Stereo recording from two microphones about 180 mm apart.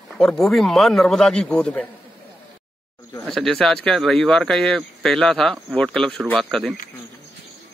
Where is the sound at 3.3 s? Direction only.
5° left (ahead or behind).